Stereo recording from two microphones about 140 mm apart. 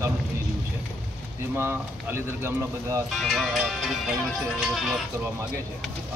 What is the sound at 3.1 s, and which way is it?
Speech, centre (ahead or behind).